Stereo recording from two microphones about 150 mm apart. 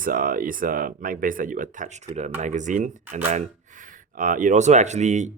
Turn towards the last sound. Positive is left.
turn(degrees=-50)  # may be behind; listen again after turning